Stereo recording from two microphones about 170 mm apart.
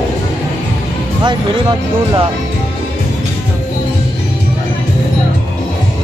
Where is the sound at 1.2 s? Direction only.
30° right (ahead or behind).